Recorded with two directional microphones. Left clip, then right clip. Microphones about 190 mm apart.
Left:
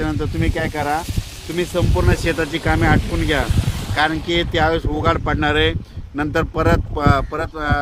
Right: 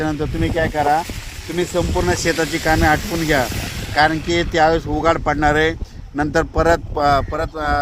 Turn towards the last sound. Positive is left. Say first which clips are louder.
# right 1 dB
turn(degrees=-50)  # may be behind; listen again after turning